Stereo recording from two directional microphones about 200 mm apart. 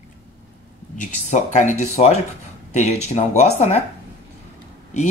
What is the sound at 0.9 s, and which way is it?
Speech, 35° left (ahead or behind).